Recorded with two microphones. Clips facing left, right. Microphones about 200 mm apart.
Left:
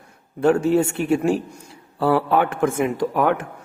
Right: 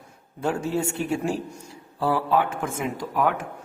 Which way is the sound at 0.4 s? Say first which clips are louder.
Left 9 dB; 65° left (ahead or behind).